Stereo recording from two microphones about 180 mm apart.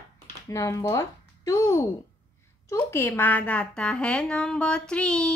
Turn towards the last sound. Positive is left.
turn(degrees=5)  # may be behind; listen again after turning